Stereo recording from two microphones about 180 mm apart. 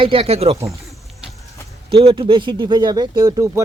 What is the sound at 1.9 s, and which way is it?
Speech, 30° right (ahead or behind).